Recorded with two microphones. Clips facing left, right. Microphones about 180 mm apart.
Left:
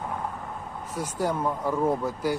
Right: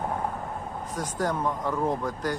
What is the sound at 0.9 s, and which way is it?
Speech, 10° left (ahead or behind).